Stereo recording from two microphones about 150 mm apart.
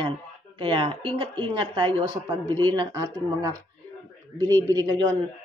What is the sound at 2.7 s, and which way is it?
Speech, 25° right (ahead or behind).